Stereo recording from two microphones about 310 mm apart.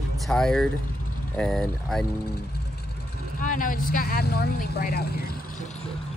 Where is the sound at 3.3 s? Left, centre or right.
Left.